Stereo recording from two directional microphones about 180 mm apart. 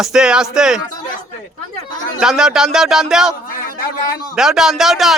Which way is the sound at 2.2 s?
5° right (ahead or behind).